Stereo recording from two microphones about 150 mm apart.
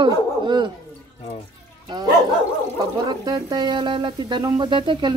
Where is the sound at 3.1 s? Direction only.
25° right (ahead or behind).